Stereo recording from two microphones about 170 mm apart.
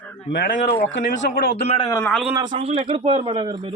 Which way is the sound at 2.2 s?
15° right (ahead or behind).